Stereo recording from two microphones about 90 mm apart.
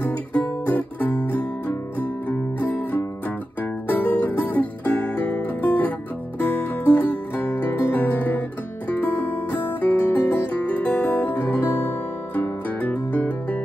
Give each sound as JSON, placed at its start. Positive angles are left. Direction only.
{"t": 0.0, "sound": "guitar", "side_deg": 20}
{"t": 3.8, "sound": "music", "side_deg": 20}